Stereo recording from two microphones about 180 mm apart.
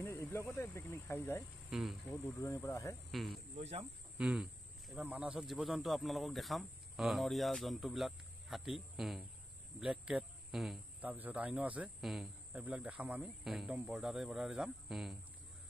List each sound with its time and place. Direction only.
0.0 s speech: 15° left (ahead or behind)
1.7 s speech: 5° right (ahead or behind)
2.0 s speech: 15° left (ahead or behind)
3.1 s speech: centre (ahead or behind)
3.5 s speech: 30° right (ahead or behind)
4.2 s speech: 5° right (ahead or behind)